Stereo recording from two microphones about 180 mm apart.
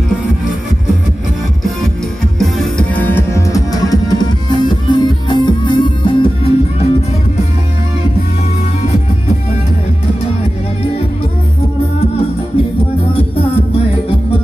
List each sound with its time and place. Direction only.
2.3 s music: centre (ahead or behind); by 6.9 s 30° left (ahead or behind)